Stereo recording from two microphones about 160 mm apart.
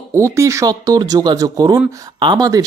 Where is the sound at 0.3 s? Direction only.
20° right (ahead or behind).